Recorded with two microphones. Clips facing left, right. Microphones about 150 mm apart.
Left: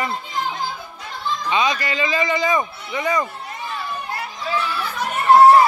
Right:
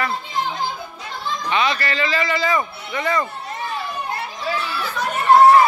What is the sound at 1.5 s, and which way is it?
A man's voice, 15° left (ahead or behind).